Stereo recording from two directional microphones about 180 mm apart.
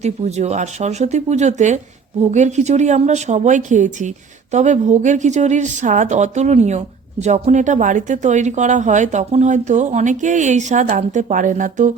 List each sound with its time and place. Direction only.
0.0 s a woman's voice: 35° right (ahead or behind)